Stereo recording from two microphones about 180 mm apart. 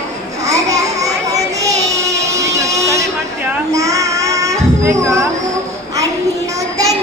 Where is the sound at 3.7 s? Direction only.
20° right (ahead or behind).